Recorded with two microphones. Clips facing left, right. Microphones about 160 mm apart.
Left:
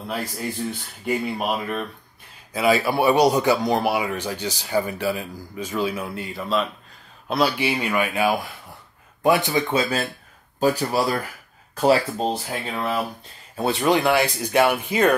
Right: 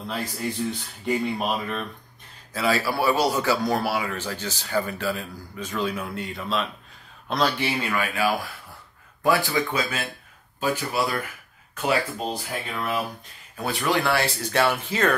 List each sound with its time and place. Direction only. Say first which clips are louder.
1.0 s speech: left 1 dB; 5° left (ahead or behind)